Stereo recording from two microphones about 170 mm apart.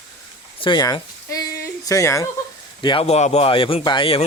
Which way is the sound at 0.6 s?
25° left (ahead or behind).